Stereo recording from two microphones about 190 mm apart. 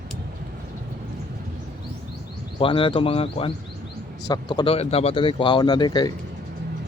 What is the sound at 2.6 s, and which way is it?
Speech, 25° left (ahead or behind).